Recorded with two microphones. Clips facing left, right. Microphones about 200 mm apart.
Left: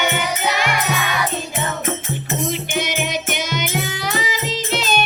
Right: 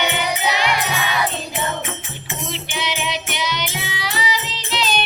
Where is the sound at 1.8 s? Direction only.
45° left (ahead or behind).